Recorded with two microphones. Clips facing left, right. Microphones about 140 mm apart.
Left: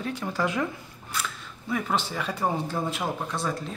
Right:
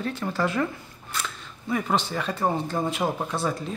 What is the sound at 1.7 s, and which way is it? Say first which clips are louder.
A man's voice: right 2 dB; 5° left (ahead or behind).